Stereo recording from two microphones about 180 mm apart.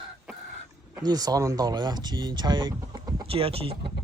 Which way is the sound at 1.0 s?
20° right (ahead or behind).